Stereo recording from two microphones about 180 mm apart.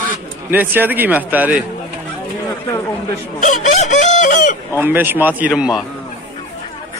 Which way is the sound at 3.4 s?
45° left (ahead or behind).